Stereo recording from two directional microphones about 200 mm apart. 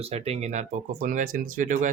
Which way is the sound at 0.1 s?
30° right (ahead or behind).